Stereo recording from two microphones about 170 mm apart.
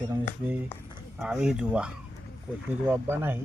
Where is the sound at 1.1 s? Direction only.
5° right (ahead or behind).